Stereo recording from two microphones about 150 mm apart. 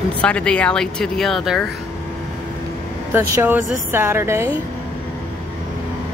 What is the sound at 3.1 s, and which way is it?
Speech, 15° right (ahead or behind).